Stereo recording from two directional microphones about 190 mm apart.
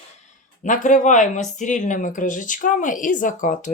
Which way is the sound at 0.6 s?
40° left (ahead or behind).